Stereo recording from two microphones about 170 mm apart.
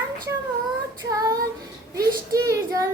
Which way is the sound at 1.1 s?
20° right (ahead or behind).